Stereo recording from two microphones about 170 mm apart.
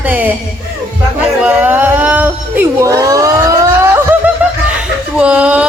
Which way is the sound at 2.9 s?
20° right (ahead or behind).